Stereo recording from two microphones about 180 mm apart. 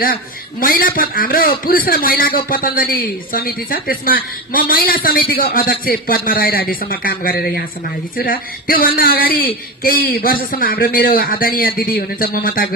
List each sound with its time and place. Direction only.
0.0 s a man's voice: 55° left (ahead or behind)